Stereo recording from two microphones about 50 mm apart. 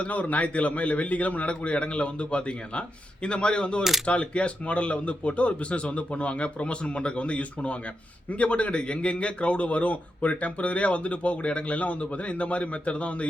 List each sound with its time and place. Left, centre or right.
0.0 s speech: left